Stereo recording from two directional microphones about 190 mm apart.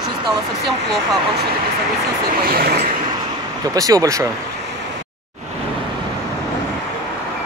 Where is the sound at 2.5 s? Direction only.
50° right (ahead or behind).